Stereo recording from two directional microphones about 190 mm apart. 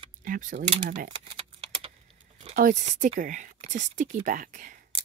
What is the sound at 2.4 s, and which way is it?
Speech, 40° right (ahead or behind).